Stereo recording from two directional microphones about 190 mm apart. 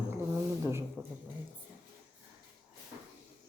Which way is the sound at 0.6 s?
15° right (ahead or behind).